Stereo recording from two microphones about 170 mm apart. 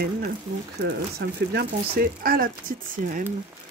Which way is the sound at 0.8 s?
65° right (ahead or behind).